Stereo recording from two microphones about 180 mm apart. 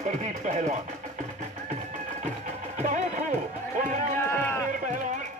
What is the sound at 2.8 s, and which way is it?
Music, 45° right (ahead or behind).